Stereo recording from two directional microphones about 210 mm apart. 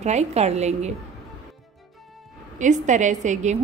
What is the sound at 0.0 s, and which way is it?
Speech, 30° right (ahead or behind).